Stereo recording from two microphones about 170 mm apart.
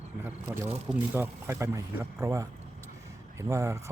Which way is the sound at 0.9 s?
10° right (ahead or behind).